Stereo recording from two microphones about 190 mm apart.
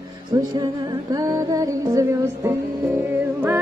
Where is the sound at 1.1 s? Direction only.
20° right (ahead or behind).